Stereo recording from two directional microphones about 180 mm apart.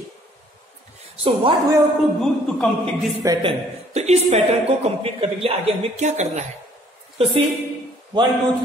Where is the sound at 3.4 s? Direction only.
35° right (ahead or behind).